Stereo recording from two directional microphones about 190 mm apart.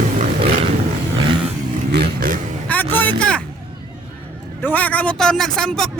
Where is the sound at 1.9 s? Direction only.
55° right (ahead or behind).